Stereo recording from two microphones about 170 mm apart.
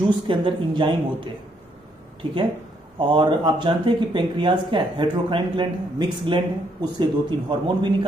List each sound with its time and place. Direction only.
0.3 s speech: 30° right (ahead or behind)
3.0 s speech: 30° right (ahead or behind)